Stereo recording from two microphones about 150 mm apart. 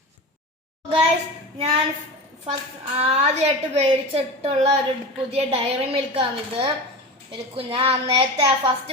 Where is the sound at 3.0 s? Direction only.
45° right (ahead or behind).